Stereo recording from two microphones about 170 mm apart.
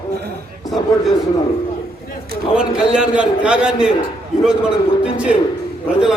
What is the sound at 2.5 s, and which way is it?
A man's voice, 5° right (ahead or behind).